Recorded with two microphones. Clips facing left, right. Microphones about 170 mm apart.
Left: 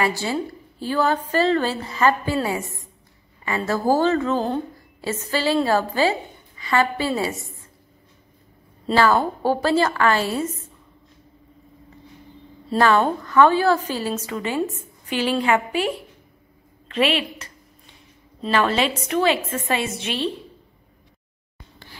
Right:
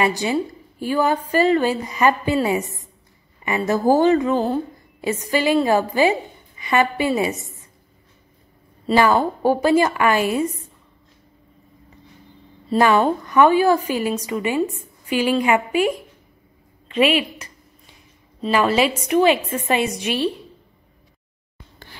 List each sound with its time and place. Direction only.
0.0 s a woman's voice: 15° right (ahead or behind)
8.9 s a woman's voice: 15° right (ahead or behind)
12.7 s a woman's voice: 15° right (ahead or behind)